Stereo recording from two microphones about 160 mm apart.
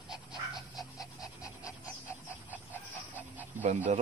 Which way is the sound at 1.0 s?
20° left (ahead or behind).